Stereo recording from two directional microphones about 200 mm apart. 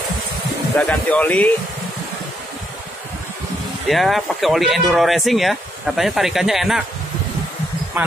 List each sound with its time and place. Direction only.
0.7 s speech: 5° left (ahead or behind)
3.9 s speech: centre (ahead or behind)